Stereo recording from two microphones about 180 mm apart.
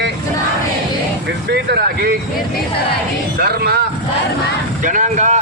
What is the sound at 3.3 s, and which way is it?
Speech, 60° right (ahead or behind).